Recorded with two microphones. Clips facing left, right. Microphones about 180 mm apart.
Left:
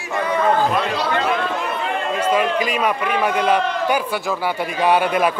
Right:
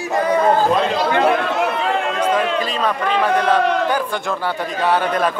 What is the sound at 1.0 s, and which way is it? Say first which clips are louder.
Chatter: right 4 dB; 55° right (ahead or behind).